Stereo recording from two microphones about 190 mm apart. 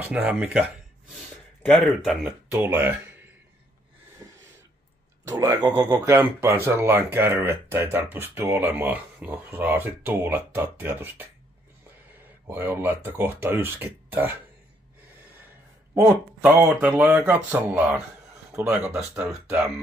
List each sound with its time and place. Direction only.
0.0 s speech: 10° right (ahead or behind)
1.1 s speech: 5° left (ahead or behind)
4.2 s a sound: 15° right (ahead or behind)
5.2 s speech: 15° right (ahead or behind)
12.4 s speech: 10° right (ahead or behind)
15.9 s speech: 10° right (ahead or behind)